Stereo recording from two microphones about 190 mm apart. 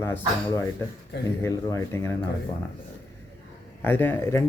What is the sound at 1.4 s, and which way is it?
Speech, 15° left (ahead or behind).